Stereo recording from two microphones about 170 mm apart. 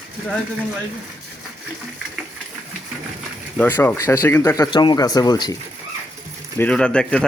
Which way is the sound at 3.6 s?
10° left (ahead or behind).